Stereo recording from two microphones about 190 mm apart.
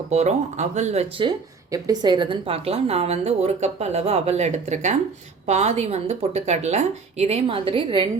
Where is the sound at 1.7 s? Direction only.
20° right (ahead or behind).